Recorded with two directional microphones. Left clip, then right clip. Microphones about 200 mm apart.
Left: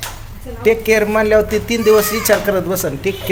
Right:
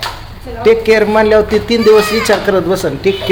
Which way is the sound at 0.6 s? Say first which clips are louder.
Right 4 dB; 5° right (ahead or behind).